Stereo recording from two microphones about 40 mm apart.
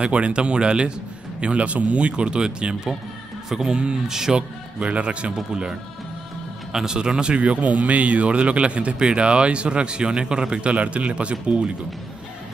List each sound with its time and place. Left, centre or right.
0.0 s a man's voice: right; by 4.4 s centre
4.4 s a man's voice: right